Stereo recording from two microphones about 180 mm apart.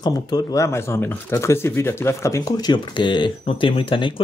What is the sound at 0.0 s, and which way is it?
Speech, 20° left (ahead or behind).